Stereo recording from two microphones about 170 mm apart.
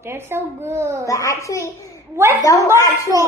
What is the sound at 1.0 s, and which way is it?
Speech, 20° left (ahead or behind).